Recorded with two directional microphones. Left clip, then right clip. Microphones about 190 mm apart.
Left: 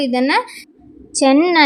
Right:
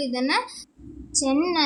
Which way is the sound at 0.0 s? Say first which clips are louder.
Left 8 dB; 30° left (ahead or behind).